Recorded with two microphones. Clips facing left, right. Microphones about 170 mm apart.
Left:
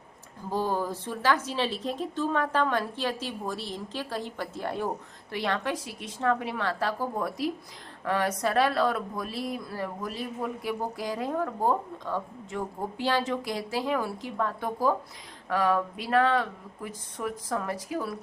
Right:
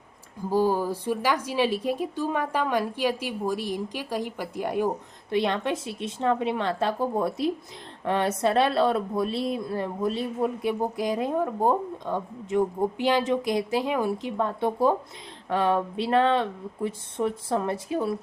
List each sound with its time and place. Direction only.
0.5 s a woman's voice: 10° right (ahead or behind)